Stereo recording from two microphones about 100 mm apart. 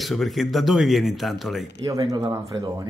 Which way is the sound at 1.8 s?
40° right (ahead or behind).